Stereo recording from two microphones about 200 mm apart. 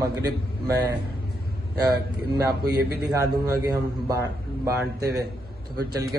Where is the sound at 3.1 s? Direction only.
20° right (ahead or behind).